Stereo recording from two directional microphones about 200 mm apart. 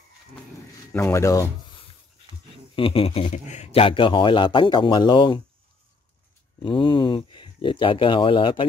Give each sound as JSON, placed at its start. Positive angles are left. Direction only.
{"t": 0.9, "sound": "speech", "side_deg": 15}
{"t": 2.7, "sound": "a man's voice", "side_deg": 25}
{"t": 6.6, "sound": "a man's voice", "side_deg": 25}